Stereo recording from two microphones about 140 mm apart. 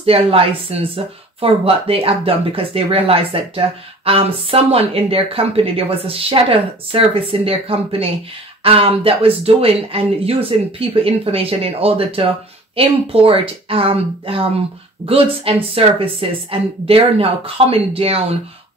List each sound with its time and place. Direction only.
0.0 s speech: 45° right (ahead or behind)